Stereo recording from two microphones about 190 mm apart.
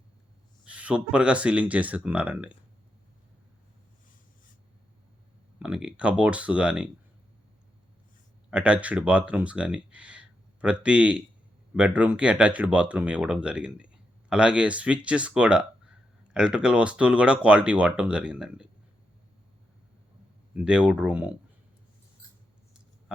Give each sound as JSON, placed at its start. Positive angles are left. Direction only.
{"t": 0.6, "sound": "speech", "side_deg": -5}
{"t": 5.6, "sound": "speech", "side_deg": -5}
{"t": 8.4, "sound": "speech", "side_deg": -5}
{"t": 20.6, "sound": "speech", "side_deg": -5}